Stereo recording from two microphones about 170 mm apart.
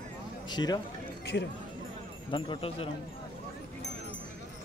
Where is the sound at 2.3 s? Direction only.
30° left (ahead or behind).